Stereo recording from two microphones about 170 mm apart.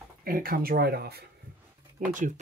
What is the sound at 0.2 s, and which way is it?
Speech, 60° right (ahead or behind).